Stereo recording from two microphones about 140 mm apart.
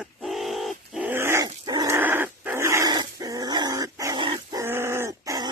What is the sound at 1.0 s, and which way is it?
Dog, 20° right (ahead or behind).